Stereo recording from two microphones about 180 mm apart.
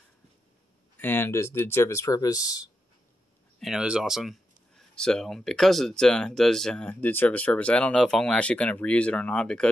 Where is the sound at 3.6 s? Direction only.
5° right (ahead or behind).